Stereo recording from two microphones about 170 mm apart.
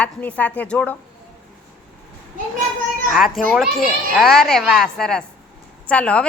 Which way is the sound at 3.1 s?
Centre (ahead or behind).